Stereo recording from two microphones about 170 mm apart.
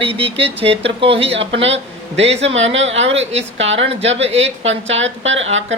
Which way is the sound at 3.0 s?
35° right (ahead or behind).